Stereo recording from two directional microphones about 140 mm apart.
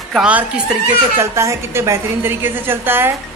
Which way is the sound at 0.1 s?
10° right (ahead or behind).